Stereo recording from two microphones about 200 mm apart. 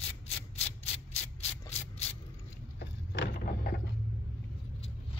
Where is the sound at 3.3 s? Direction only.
45° left (ahead or behind).